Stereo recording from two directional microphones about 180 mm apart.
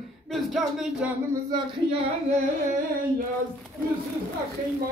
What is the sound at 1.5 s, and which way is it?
Speech, 25° right (ahead or behind).